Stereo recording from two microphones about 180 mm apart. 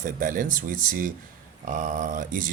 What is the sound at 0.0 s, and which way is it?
Speech, 50° right (ahead or behind).